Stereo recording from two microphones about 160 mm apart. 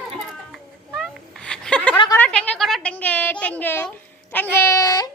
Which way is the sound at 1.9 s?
30° left (ahead or behind).